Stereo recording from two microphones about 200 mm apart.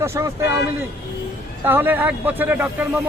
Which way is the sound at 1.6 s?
10° right (ahead or behind).